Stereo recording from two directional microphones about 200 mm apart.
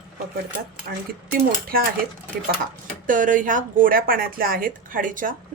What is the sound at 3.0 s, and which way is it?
A woman's voice, 40° right (ahead or behind).